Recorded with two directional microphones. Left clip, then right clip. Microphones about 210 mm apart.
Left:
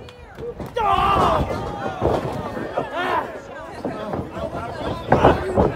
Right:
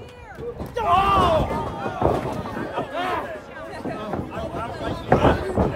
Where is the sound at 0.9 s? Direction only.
Centre (ahead or behind).